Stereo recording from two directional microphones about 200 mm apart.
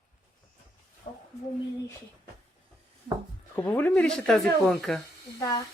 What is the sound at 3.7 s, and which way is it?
Speech, 10° left (ahead or behind).